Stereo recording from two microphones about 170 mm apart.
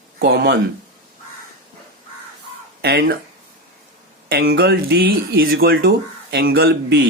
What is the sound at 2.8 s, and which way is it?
Speech, 70° right (ahead or behind).